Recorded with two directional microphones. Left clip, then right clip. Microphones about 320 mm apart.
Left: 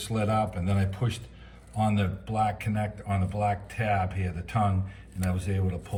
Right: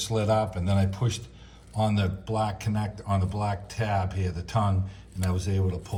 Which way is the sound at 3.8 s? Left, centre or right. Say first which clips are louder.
Even; centre.